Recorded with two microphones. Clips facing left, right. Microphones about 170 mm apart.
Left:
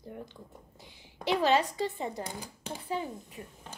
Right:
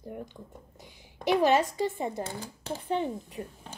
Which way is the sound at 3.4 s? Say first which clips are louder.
Right 7 dB; 35° right (ahead or behind).